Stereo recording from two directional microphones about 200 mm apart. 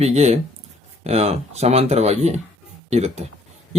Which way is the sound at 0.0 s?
35° right (ahead or behind).